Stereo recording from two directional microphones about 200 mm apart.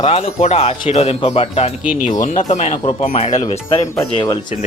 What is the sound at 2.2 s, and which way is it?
Speech, 35° left (ahead or behind).